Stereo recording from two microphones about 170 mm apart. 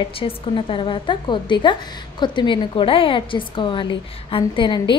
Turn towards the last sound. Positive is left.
turn(degrees=30)  # may be behind; listen again after turning